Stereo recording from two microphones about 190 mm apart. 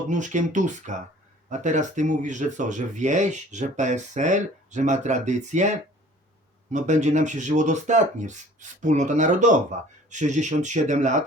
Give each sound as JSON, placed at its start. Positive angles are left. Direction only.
{"t": 0.1, "sound": "speech", "side_deg": -40}